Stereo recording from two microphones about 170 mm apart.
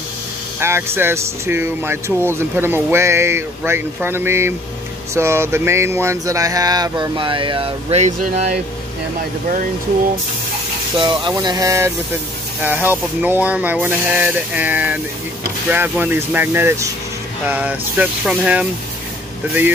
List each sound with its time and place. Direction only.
0.6 s speech: 15° right (ahead or behind); by 8.5 s 40° right (ahead or behind)
11.0 s speech: 25° right (ahead or behind); by 18.7 s 5° right (ahead or behind)